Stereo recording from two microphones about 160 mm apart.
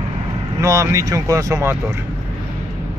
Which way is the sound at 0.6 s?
20° right (ahead or behind).